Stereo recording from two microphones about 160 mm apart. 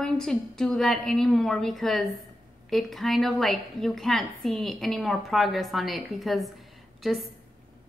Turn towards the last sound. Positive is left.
turn(degrees=0)  # may be behind; listen again after turning